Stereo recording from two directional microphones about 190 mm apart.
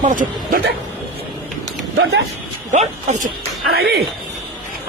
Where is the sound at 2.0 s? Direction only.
75° right (ahead or behind).